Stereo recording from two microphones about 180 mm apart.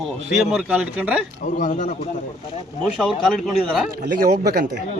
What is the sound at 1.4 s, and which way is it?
Speech, 45° left (ahead or behind).